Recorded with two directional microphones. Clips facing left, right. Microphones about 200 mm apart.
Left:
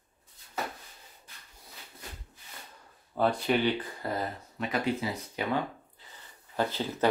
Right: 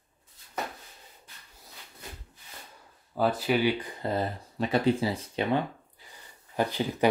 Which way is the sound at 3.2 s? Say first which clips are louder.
Right 1 dB; 5° right (ahead or behind).